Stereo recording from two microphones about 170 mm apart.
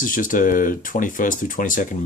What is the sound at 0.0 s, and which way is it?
Speech, 50° left (ahead or behind).